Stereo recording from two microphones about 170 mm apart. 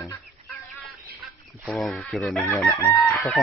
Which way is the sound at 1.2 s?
Centre (ahead or behind).